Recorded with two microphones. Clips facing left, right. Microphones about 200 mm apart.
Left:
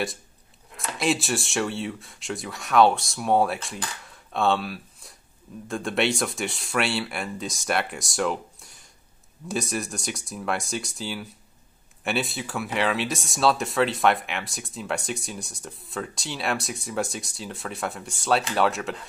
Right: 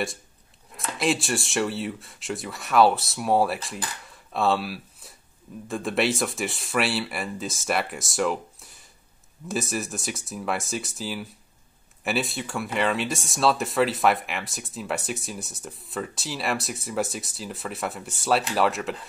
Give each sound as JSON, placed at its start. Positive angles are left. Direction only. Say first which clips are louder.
{"t": 0.7, "sound": "speech", "louder": "even", "side_deg": 0}